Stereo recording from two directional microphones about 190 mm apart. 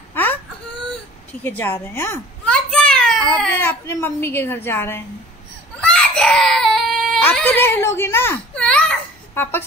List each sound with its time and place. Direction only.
0.1 s whimper: 10° left (ahead or behind)
1.4 s a child's voice: 10° left (ahead or behind)
5.8 s baby cry: 5° left (ahead or behind)